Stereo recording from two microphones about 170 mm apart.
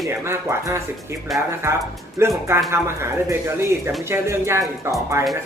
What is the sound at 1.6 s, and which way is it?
Speech, 15° right (ahead or behind).